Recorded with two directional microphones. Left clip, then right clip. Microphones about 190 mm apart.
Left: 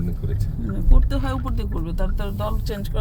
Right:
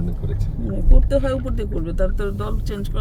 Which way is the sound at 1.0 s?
5° left (ahead or behind).